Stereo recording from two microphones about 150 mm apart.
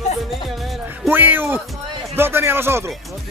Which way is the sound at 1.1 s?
15° right (ahead or behind).